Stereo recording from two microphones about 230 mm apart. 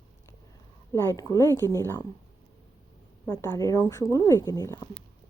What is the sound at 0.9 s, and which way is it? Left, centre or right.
A woman's voice, centre.